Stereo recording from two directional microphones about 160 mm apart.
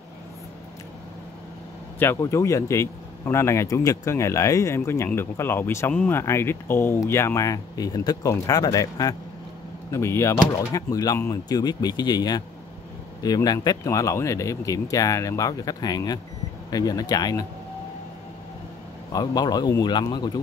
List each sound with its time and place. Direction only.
2.0 s speech: 15° left (ahead or behind)
19.1 s speech: 25° left (ahead or behind)